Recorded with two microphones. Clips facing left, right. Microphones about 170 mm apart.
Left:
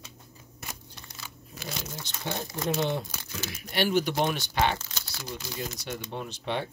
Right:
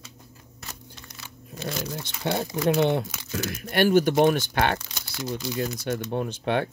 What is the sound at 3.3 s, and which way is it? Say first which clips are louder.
Speech: right 6 dB; 50° right (ahead or behind).